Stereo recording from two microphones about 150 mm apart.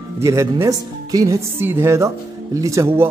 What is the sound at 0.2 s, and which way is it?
Speech, 20° right (ahead or behind).